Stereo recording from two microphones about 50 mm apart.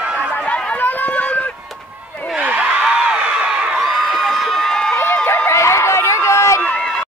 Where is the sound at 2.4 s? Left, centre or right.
Right.